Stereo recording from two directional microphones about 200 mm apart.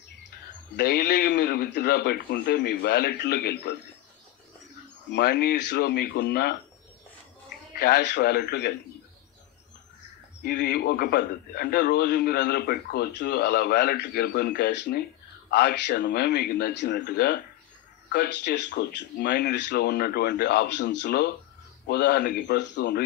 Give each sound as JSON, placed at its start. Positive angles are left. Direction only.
{"t": 0.7, "sound": "a man's voice", "side_deg": 55}
{"t": 5.1, "sound": "speech", "side_deg": 55}
{"t": 7.8, "sound": "a man's voice", "side_deg": 55}
{"t": 10.4, "sound": "a man's voice", "side_deg": 55}